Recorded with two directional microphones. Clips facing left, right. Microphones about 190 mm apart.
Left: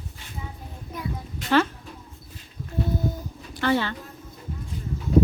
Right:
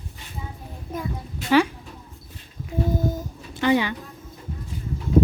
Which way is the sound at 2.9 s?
45° right (ahead or behind).